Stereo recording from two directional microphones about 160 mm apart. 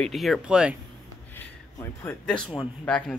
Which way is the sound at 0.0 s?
Centre (ahead or behind).